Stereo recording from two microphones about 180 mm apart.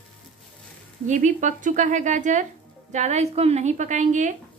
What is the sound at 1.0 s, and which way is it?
A woman's voice, 45° right (ahead or behind).